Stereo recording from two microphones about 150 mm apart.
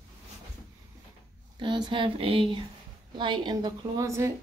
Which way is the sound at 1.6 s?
30° right (ahead or behind).